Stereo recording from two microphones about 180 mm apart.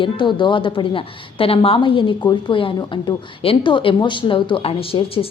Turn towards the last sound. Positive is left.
turn(degrees=30)  # may be behind; listen again after turning